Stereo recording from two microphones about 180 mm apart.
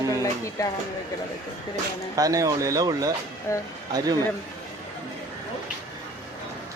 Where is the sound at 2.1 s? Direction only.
20° right (ahead or behind).